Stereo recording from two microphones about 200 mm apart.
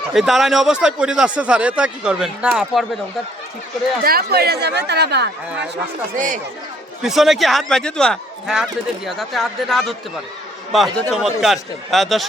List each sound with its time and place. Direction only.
0.1 s a man's voice: centre (ahead or behind)
4.0 s speech: 50° right (ahead or behind)
6.1 s speech: 40° right (ahead or behind)
7.0 s a man's voice: centre (ahead or behind)